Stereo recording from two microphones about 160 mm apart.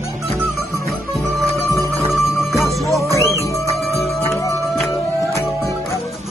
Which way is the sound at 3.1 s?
20° left (ahead or behind).